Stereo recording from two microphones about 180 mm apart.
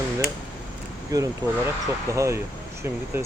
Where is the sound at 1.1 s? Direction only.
15° right (ahead or behind).